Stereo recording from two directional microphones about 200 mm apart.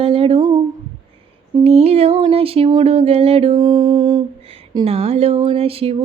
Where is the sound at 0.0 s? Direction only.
30° right (ahead or behind).